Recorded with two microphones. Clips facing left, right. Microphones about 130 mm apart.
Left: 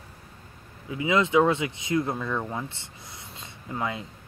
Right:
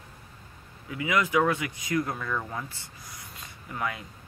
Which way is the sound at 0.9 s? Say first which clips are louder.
Left 4 dB; 25° left (ahead or behind).